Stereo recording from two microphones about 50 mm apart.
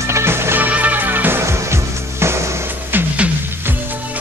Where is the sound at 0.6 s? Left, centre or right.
Right.